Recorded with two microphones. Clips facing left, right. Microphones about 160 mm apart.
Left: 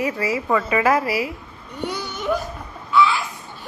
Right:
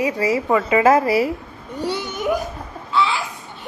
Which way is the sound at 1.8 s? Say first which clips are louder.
Right 3 dB; 25° right (ahead or behind).